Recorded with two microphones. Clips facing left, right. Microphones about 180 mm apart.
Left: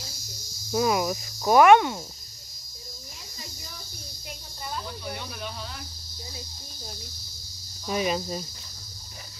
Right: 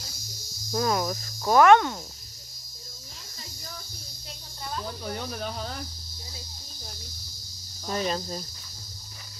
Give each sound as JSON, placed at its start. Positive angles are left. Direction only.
{"t": 0.7, "sound": "speech", "side_deg": 10}
{"t": 5.0, "sound": "speech", "side_deg": -40}
{"t": 7.9, "sound": "speech", "side_deg": 10}